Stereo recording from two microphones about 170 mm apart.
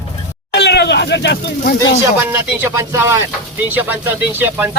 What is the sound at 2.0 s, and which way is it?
Speech, 15° right (ahead or behind).